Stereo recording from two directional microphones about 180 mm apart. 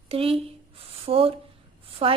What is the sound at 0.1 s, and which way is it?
A woman's voice, 30° right (ahead or behind).